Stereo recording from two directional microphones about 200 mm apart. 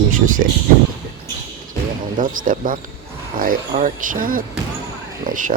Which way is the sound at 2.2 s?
40° right (ahead or behind).